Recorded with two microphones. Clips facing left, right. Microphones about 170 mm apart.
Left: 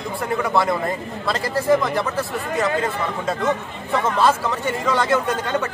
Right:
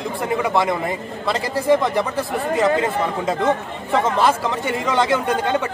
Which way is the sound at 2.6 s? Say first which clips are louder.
Right 3 dB; 20° right (ahead or behind).